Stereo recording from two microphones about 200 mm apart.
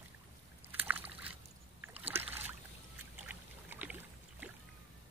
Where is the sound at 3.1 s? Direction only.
10° right (ahead or behind).